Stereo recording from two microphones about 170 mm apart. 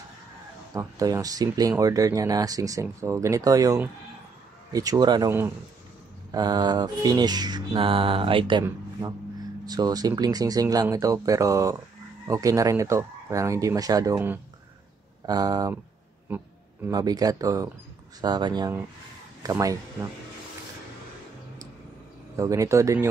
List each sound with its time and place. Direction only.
0.7 s speech: 20° right (ahead or behind)
6.3 s speech: 25° right (ahead or behind)
9.7 s speech: 25° right (ahead or behind)
16.3 s a sound: 10° right (ahead or behind)
16.9 s speech: 20° right (ahead or behind)
22.3 s speech: 20° right (ahead or behind)